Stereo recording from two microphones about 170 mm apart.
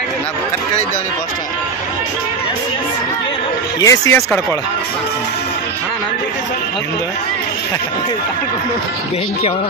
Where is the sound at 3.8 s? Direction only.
20° left (ahead or behind).